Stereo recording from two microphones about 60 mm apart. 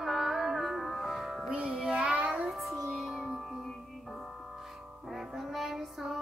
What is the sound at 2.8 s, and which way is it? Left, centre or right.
Music, centre.